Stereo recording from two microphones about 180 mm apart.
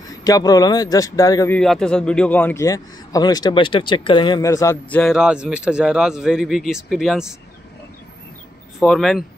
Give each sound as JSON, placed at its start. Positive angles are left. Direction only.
{"t": 0.1, "sound": "speech", "side_deg": 20}
{"t": 1.5, "sound": "a man's voice", "side_deg": 5}
{"t": 5.1, "sound": "speech", "side_deg": -5}
{"t": 8.7, "sound": "speech", "side_deg": 0}